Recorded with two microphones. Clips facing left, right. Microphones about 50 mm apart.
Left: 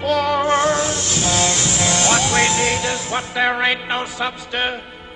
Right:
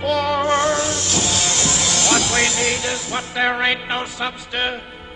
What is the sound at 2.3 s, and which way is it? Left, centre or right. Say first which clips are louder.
Music: left 2 dB; centre.